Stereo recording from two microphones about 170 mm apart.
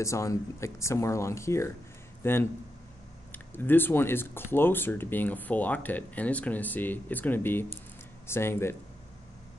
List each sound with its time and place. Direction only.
0.0 s speech: 15° left (ahead or behind)